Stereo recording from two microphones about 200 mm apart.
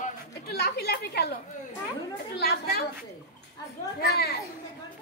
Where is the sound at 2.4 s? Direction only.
50° left (ahead or behind).